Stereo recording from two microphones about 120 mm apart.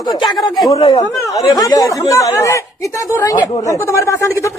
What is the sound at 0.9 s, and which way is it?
Speech, 25° left (ahead or behind).